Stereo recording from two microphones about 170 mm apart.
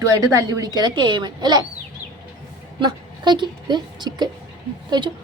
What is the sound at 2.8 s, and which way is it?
A woman's voice, 25° right (ahead or behind).